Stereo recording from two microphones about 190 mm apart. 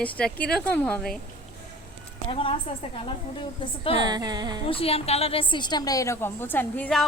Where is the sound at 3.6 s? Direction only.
30° left (ahead or behind).